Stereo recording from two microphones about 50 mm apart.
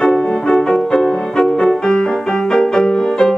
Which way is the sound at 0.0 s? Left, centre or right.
Centre.